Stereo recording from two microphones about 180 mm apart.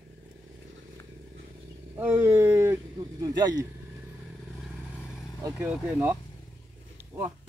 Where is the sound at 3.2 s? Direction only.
20° right (ahead or behind).